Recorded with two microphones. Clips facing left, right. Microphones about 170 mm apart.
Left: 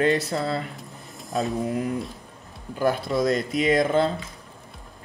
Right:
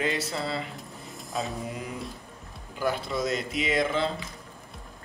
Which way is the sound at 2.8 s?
50° left (ahead or behind).